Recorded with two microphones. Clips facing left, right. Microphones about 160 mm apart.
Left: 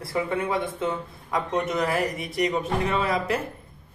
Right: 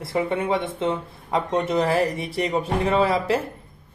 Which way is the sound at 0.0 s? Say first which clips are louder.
Right 3 dB; 25° right (ahead or behind).